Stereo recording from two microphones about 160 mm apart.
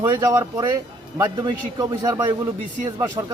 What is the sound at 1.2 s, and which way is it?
A man's voice, 25° right (ahead or behind).